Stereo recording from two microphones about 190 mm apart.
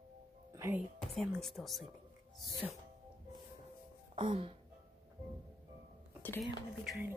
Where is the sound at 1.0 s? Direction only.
Centre (ahead or behind).